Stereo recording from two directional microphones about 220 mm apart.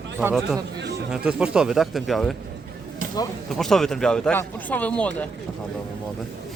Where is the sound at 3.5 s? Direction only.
Centre (ahead or behind).